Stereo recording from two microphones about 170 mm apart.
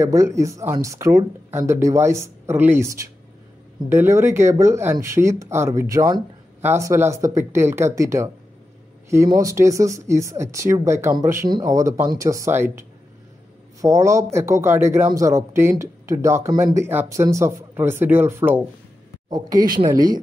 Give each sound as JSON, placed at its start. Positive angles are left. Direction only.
{"t": 0.0, "sound": "a man's voice", "side_deg": -15}
{"t": 19.9, "sound": "speech", "side_deg": -20}